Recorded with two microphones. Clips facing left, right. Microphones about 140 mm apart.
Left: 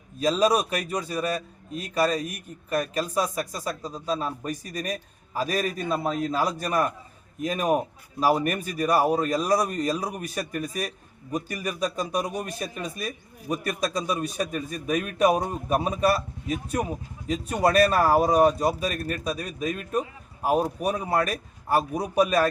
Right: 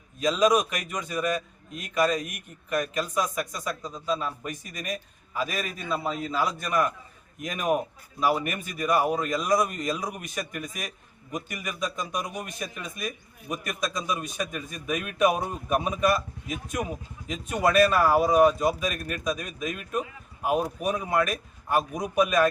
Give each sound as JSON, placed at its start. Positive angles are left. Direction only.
{"t": 0.2, "sound": "speech", "side_deg": 35}